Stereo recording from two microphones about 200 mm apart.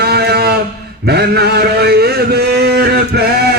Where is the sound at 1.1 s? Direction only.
55° right (ahead or behind).